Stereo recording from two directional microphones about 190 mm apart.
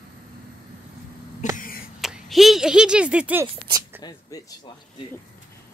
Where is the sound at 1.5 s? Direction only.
50° left (ahead or behind).